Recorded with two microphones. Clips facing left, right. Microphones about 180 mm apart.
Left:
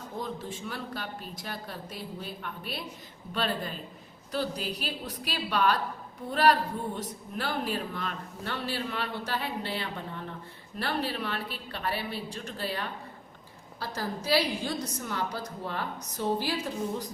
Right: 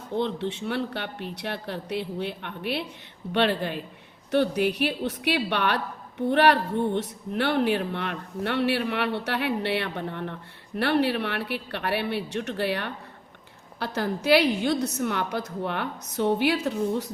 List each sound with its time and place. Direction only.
0.2 s speech: 70° right (ahead or behind)